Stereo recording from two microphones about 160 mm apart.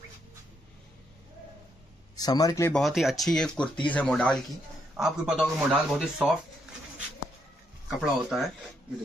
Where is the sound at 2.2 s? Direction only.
25° left (ahead or behind).